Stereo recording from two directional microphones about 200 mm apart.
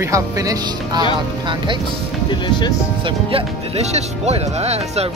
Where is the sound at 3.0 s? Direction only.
30° right (ahead or behind).